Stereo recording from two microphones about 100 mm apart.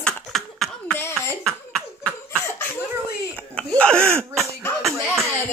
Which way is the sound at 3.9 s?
25° right (ahead or behind).